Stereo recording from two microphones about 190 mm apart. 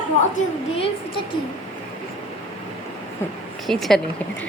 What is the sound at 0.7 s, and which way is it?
Speech, 30° left (ahead or behind).